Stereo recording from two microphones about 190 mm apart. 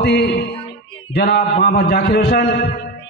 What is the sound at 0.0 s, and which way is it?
Music, 60° left (ahead or behind).